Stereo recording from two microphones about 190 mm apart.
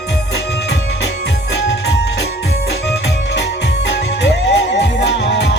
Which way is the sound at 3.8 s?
65° left (ahead or behind).